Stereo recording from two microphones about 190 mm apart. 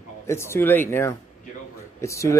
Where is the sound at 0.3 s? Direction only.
15° left (ahead or behind).